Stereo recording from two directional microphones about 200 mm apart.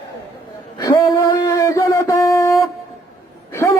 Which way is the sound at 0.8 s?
15° left (ahead or behind).